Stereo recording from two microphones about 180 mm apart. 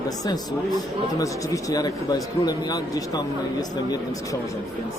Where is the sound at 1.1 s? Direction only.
20° left (ahead or behind).